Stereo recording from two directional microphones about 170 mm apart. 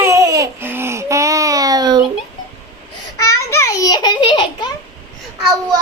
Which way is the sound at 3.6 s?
20° left (ahead or behind).